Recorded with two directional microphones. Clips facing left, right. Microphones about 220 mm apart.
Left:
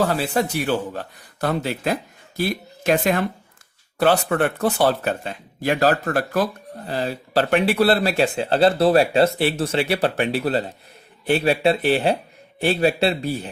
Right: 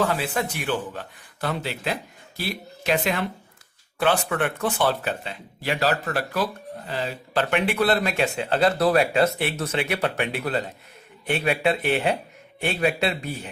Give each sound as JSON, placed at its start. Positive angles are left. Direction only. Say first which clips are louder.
{"t": 0.0, "sound": "a man's voice", "louder": "left 4 dB", "side_deg": 35}